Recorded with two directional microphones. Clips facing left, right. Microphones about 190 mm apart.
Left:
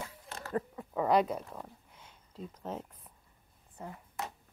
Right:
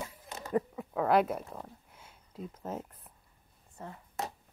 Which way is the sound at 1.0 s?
5° right (ahead or behind).